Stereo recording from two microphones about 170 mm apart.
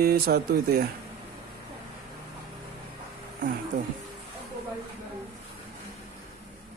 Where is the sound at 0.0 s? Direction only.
65° right (ahead or behind).